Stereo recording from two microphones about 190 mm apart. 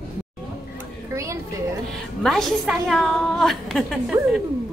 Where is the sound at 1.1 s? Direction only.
15° right (ahead or behind).